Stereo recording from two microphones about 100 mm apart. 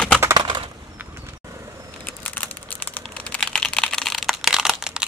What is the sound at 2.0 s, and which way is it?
Typing, 15° left (ahead or behind).